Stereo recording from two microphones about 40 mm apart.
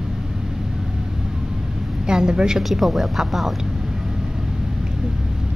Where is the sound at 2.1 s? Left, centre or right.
Centre.